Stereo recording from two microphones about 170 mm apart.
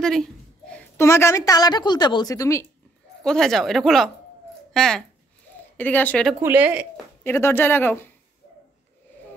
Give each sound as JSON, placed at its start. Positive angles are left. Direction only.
{"t": 0.0, "sound": "a sound", "side_deg": 5}
{"t": 1.0, "sound": "a woman's voice", "side_deg": 15}
{"t": 3.3, "sound": "speech", "side_deg": 5}
{"t": 6.4, "sound": "speech", "side_deg": -10}
{"t": 7.2, "sound": "speech", "side_deg": 15}